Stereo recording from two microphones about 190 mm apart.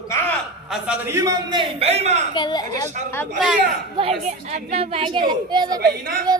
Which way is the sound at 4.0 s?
25° right (ahead or behind).